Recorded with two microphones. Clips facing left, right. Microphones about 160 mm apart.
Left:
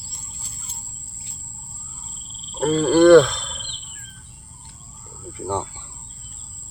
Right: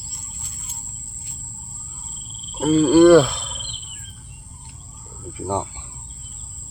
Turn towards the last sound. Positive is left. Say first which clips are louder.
# right 1 dB
turn(degrees=-10)  # may be behind; listen again after turning